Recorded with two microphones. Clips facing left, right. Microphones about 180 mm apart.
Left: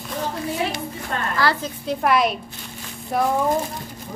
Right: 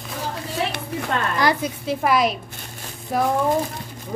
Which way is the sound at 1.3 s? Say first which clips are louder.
Right 1 dB; 15° right (ahead or behind).